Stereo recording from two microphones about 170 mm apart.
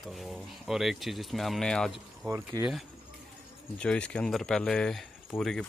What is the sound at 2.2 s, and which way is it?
Speech, 20° right (ahead or behind).